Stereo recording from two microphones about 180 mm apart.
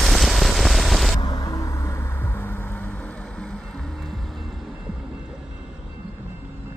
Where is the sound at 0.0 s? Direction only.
Centre (ahead or behind).